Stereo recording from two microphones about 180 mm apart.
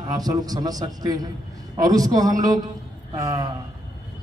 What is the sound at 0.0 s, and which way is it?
A man's voice, 20° right (ahead or behind).